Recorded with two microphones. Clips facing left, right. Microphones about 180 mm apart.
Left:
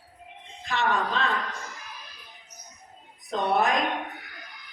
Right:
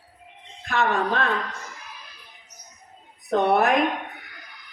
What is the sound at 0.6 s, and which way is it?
Speech, 60° right (ahead or behind).